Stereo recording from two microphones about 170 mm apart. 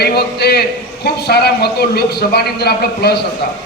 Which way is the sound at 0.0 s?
70° left (ahead or behind).